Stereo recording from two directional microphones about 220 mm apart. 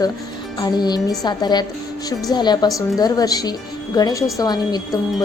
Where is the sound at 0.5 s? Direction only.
20° left (ahead or behind).